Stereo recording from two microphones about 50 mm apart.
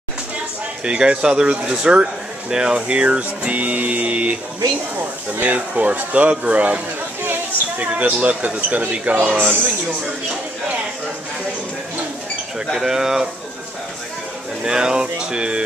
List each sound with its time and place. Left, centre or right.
0.8 s speech: centre
7.8 s speech: right
12.7 s speech: centre
14.6 s speech: centre